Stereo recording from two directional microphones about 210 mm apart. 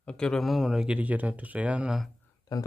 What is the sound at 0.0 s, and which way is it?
Speech, 5° left (ahead or behind).